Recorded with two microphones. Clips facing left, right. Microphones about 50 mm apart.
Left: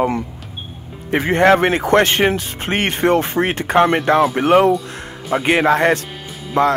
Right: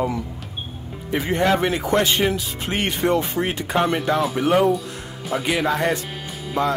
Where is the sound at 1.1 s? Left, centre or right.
Left.